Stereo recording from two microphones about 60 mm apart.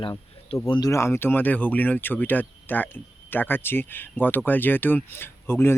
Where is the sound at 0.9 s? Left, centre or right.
Left.